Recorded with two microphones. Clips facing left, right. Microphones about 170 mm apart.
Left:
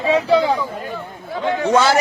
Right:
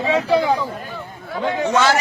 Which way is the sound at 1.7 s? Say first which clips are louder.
Left 3 dB; 30° left (ahead or behind).